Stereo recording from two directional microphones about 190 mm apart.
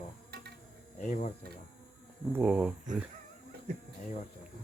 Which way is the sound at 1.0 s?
40° left (ahead or behind).